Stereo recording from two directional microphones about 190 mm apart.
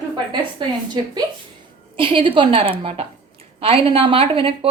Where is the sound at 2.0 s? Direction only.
25° right (ahead or behind).